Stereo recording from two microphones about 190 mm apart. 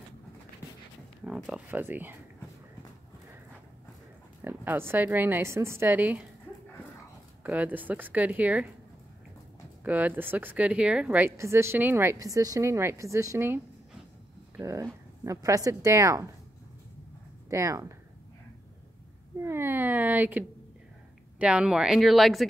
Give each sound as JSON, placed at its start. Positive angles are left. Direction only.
{"t": 1.2, "sound": "speech", "side_deg": -5}
{"t": 4.4, "sound": "speech", "side_deg": -10}
{"t": 7.4, "sound": "speech", "side_deg": -10}
{"t": 9.8, "sound": "speech", "side_deg": -10}
{"t": 14.6, "sound": "speech", "side_deg": -15}
{"t": 17.5, "sound": "speech", "side_deg": -15}
{"t": 19.4, "sound": "cat", "side_deg": -10}
{"t": 21.4, "sound": "speech", "side_deg": -5}